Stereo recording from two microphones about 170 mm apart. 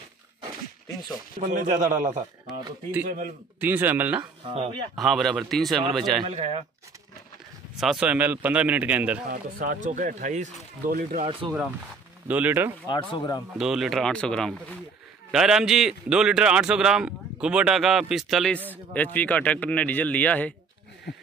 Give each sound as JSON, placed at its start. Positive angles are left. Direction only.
{"t": 1.5, "sound": "speech", "side_deg": -50}
{"t": 3.1, "sound": "speech", "side_deg": -50}
{"t": 3.6, "sound": "a man's voice", "side_deg": -10}
{"t": 4.2, "sound": "speech", "side_deg": -30}
{"t": 4.9, "sound": "a man's voice", "side_deg": 0}
{"t": 6.2, "sound": "speech", "side_deg": -35}
{"t": 7.8, "sound": "a man's voice", "side_deg": -5}
{"t": 9.3, "sound": "speech", "side_deg": -50}
{"t": 12.3, "sound": "a man's voice", "side_deg": -10}
{"t": 12.8, "sound": "speech", "side_deg": 30}
{"t": 13.6, "sound": "a man's voice", "side_deg": 0}